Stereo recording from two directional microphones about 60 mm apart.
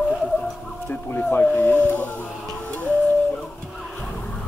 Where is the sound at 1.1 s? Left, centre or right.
Left.